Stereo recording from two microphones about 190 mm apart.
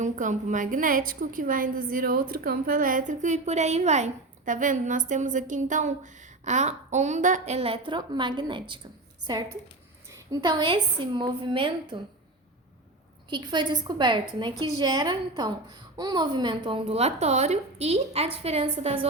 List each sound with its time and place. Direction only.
0.0 s a woman's voice: 40° right (ahead or behind); by 8.8 s 25° right (ahead or behind)
10.1 s a woman's voice: 20° right (ahead or behind)
13.3 s a woman's voice: 25° right (ahead or behind)